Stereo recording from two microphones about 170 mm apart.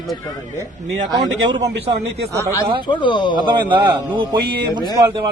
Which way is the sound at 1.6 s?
90° right.